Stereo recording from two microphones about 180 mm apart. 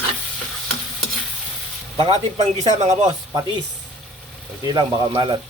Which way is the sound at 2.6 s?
40° right (ahead or behind).